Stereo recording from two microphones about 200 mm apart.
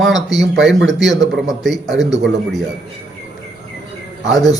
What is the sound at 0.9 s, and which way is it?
A man's voice, centre (ahead or behind).